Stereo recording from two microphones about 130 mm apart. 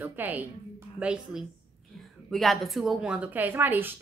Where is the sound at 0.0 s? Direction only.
15° right (ahead or behind).